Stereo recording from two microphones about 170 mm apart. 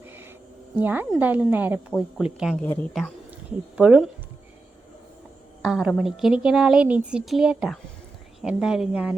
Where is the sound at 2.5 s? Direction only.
10° left (ahead or behind).